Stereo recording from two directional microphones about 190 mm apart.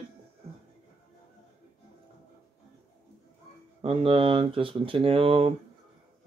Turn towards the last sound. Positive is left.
turn(degrees=-30)  # may be behind; listen again after turning